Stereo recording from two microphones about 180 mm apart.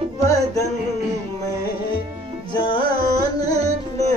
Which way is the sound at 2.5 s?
25° left (ahead or behind).